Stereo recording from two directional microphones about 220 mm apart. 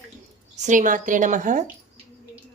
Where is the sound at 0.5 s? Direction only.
35° right (ahead or behind).